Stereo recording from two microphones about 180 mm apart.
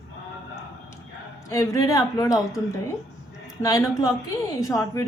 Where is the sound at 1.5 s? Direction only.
15° left (ahead or behind).